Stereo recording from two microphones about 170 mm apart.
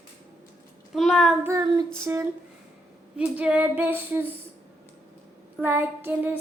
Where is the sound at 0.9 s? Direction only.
Centre (ahead or behind).